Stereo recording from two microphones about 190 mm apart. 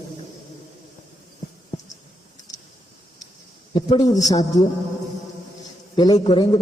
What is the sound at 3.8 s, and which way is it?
Speech, 25° left (ahead or behind).